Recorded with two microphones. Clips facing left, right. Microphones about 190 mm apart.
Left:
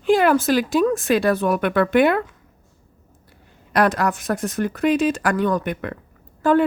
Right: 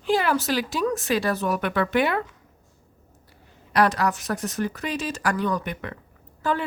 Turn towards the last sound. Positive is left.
turn(degrees=50)  # may be behind; listen again after turning